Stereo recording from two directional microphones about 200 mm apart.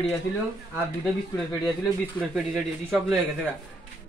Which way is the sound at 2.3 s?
Centre (ahead or behind).